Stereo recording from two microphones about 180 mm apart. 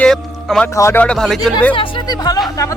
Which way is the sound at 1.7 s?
25° left (ahead or behind).